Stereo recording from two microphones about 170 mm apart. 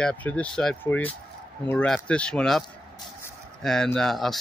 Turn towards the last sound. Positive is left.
turn(degrees=0)  # may be behind; listen again after turning